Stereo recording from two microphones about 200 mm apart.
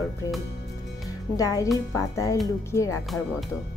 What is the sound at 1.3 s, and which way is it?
Speech, 15° left (ahead or behind).